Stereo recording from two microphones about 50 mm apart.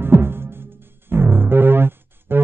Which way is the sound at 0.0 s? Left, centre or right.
Right.